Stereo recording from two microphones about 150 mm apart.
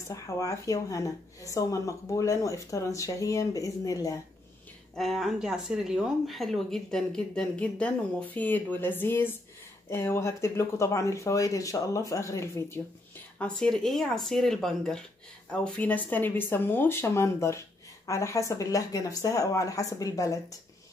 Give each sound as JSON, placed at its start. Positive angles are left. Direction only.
{"t": 0.1, "sound": "speech", "side_deg": 20}
{"t": 4.9, "sound": "speech", "side_deg": 0}
{"t": 13.4, "sound": "speech", "side_deg": 5}